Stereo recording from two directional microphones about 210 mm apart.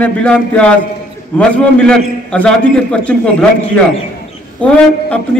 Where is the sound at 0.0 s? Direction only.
5° left (ahead or behind).